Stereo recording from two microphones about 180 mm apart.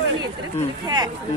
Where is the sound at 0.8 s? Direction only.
20° right (ahead or behind).